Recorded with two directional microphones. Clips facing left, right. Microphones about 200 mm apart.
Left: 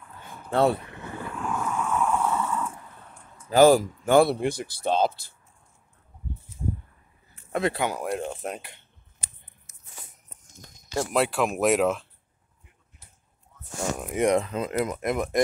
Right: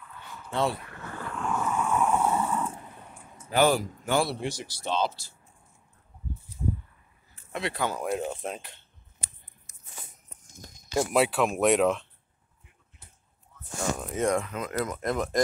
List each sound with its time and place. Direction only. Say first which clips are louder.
0.0 s a sound: left 1 dB; 50° left (ahead or behind)
0.7 s vehicle: left 3 dB; 20° left (ahead or behind); by 1.9 s centre (ahead or behind)
1.9 s a sound: even; 20° right (ahead or behind)
2.9 s a sound: right 2 dB; 10° right (ahead or behind)
3.4 s speech: left 7 dB; 40° left (ahead or behind)
4.0 s speech: left 8 dB; 55° left (ahead or behind)
7.8 s speech: left 2 dB; 10° left (ahead or behind)
8.1 s speech: even; centre (ahead or behind)
11.0 s speech: even; 5° right (ahead or behind)
13.9 s speech: left 5 dB; 10° left (ahead or behind)
14.4 s speech: left 4 dB; 30° left (ahead or behind); by 15.3 s 10° left (ahead or behind)